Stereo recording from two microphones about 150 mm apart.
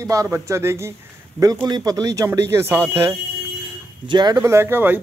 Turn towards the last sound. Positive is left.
turn(degrees=-15)  # may be behind; listen again after turning